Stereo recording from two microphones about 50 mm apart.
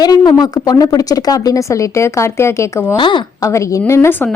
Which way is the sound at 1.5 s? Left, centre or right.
Left.